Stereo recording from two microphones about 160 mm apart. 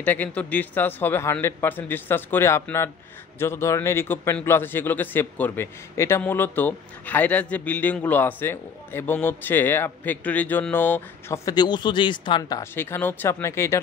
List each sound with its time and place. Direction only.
0.0 s a man's voice: 10° left (ahead or behind); by 12.6 s 25° left (ahead or behind)
12.7 s a man's voice: 15° left (ahead or behind)